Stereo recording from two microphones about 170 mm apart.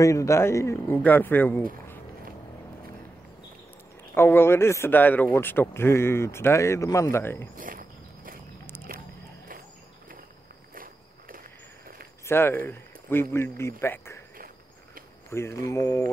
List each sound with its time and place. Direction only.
0.0 s speech: 20° left (ahead or behind)
4.1 s speech: 15° left (ahead or behind)
7.5 s walk: 55° right (ahead or behind)
10.7 s walk: 55° right (ahead or behind)
12.3 s speech: 15° left (ahead or behind)
15.3 s speech: 15° left (ahead or behind)